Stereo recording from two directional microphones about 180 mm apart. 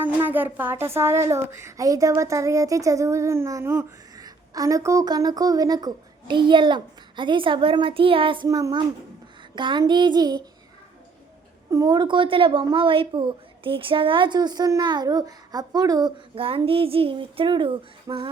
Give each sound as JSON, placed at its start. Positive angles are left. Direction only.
{"t": 0.0, "sound": "a woman's voice", "side_deg": -10}
{"t": 11.7, "sound": "a woman's voice", "side_deg": -20}